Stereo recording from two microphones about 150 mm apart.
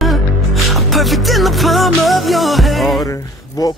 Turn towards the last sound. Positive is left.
turn(degrees=25)  # may be behind; listen again after turning